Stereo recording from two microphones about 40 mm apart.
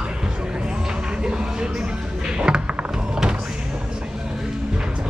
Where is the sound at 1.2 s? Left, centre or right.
Centre.